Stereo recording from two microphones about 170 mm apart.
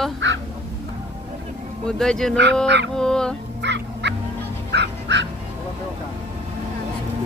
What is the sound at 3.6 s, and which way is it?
Dog, 90° right.